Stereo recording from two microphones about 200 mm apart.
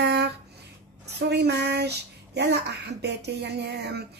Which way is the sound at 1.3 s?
55° right (ahead or behind).